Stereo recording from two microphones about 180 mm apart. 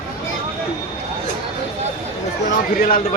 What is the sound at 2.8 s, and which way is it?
Speech, 40° left (ahead or behind).